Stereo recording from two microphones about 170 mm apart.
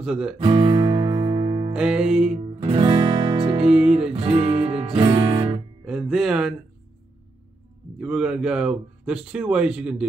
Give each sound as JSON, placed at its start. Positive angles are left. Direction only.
{"t": 0.0, "sound": "speech", "side_deg": -5}
{"t": 0.4, "sound": "music", "side_deg": -25}
{"t": 1.7, "sound": "speech", "side_deg": -5}
{"t": 2.3, "sound": "music", "side_deg": -30}
{"t": 3.6, "sound": "speech", "side_deg": -5}
{"t": 4.1, "sound": "guitar", "side_deg": -35}
{"t": 5.9, "sound": "speech", "side_deg": -5}
{"t": 8.0, "sound": "speech", "side_deg": -5}